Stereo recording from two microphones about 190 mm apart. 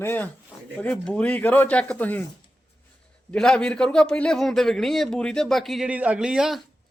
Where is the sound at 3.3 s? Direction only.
5° left (ahead or behind).